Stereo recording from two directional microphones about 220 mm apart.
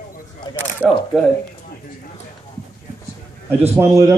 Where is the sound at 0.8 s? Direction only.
Centre (ahead or behind).